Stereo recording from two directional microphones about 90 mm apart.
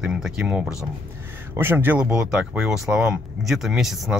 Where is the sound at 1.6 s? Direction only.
25° right (ahead or behind).